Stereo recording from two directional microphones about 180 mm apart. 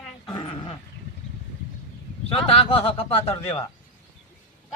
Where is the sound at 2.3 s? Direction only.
30° left (ahead or behind).